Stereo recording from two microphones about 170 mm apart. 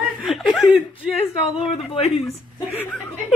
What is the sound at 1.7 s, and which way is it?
Speech, 35° left (ahead or behind).